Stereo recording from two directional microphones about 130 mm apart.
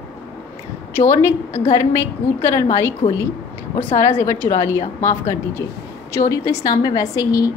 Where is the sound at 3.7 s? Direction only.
20° left (ahead or behind).